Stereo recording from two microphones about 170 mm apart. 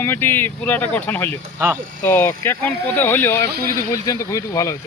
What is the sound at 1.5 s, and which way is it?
Speech, 10° right (ahead or behind).